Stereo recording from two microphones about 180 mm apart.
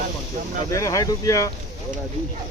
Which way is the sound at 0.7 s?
15° left (ahead or behind).